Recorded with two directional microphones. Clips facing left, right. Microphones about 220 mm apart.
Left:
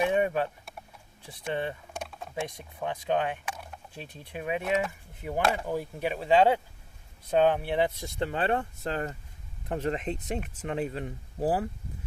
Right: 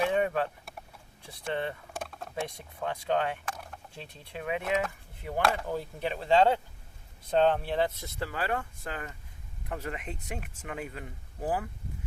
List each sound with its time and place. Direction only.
0.0 s vehicle: 20° left (ahead or behind)
1.5 s speech: 15° left (ahead or behind)
2.0 s vehicle: centre (ahead or behind)
2.8 s speech: 15° left (ahead or behind); by 11.7 s 35° left (ahead or behind)